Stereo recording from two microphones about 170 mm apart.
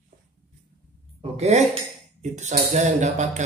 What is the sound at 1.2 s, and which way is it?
Speech, 40° right (ahead or behind).